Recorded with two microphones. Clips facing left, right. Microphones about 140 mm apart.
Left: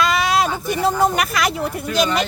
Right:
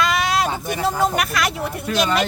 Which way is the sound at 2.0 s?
55° right (ahead or behind).